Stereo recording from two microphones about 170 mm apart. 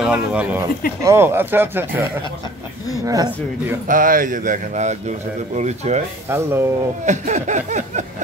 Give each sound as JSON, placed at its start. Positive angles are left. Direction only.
{"t": 0.0, "sound": "speech", "side_deg": -5}
{"t": 3.1, "sound": "speech", "side_deg": -20}
{"t": 3.8, "sound": "speech", "side_deg": -50}
{"t": 6.2, "sound": "speech", "side_deg": -15}
{"t": 7.1, "sound": "speech", "side_deg": -45}